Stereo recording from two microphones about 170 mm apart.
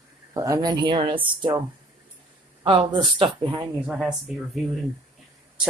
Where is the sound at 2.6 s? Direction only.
30° right (ahead or behind).